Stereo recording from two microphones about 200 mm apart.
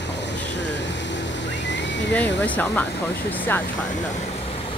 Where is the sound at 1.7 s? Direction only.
65° left (ahead or behind).